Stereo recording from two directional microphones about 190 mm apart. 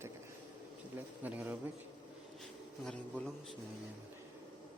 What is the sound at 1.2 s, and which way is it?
Speech, 10° right (ahead or behind).